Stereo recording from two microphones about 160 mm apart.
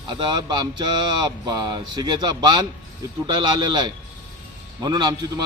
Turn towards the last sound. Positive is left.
turn(degrees=-25)  # may be behind; listen again after turning